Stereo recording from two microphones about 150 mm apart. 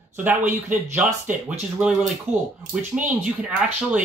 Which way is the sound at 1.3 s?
10° right (ahead or behind).